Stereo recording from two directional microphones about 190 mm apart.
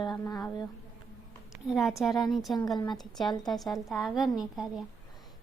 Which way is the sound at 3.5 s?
Centre (ahead or behind).